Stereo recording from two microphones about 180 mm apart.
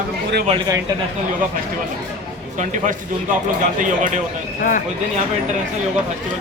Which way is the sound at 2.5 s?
45° right (ahead or behind).